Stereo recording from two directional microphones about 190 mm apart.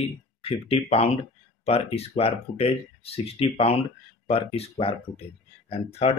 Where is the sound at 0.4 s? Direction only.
30° left (ahead or behind).